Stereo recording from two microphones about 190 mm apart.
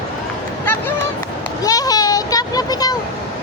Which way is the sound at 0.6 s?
10° left (ahead or behind).